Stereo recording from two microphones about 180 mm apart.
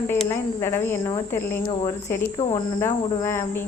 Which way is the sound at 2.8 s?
15° left (ahead or behind).